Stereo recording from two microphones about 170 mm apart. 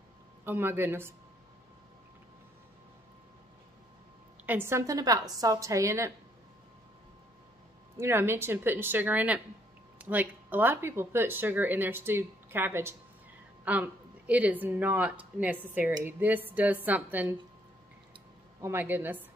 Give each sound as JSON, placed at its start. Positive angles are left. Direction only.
{"t": 0.5, "sound": "speech", "side_deg": -15}
{"t": 4.5, "sound": "a woman's voice", "side_deg": -15}
{"t": 8.0, "sound": "speech", "side_deg": -15}
{"t": 18.6, "sound": "speech", "side_deg": -15}